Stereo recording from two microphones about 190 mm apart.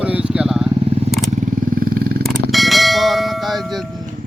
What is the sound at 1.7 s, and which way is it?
Wild animals, 50° right (ahead or behind).